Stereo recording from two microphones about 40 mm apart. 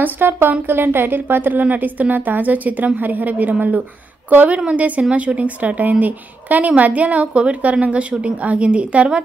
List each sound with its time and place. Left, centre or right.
0.0 s a woman's voice: right